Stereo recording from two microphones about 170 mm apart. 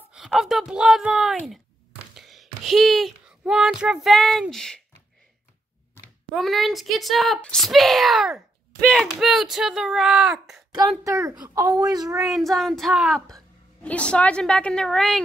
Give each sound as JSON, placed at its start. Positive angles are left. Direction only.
{"t": 0.1, "sound": "speech", "side_deg": -5}
{"t": 6.3, "sound": "speech", "side_deg": 0}
{"t": 11.1, "sound": "speech", "side_deg": -20}
{"t": 12.2, "sound": "speech", "side_deg": 0}